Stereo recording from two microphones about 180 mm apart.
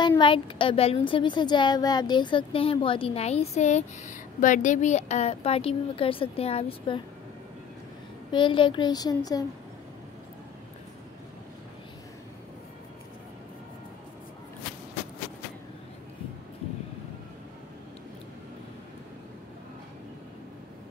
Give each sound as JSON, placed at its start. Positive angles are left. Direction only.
{"t": 0.2, "sound": "a woman's voice", "side_deg": 30}
{"t": 8.3, "sound": "a woman's voice", "side_deg": 25}